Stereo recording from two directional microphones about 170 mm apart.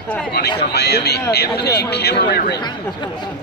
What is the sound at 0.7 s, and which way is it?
A man's voice, 75° left (ahead or behind).